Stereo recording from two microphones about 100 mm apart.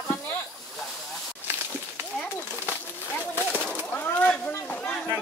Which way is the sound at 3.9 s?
15° left (ahead or behind).